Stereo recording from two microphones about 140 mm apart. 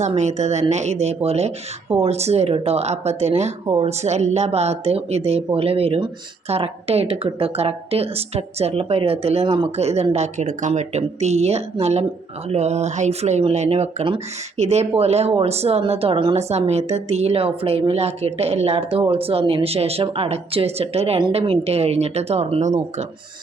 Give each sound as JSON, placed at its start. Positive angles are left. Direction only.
{"t": 0.1, "sound": "speech", "side_deg": -55}